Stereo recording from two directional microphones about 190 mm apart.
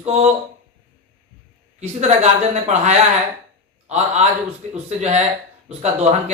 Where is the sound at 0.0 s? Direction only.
35° right (ahead or behind).